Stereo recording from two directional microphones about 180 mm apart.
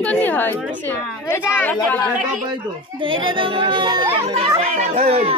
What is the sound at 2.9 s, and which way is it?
Speech, 30° right (ahead or behind).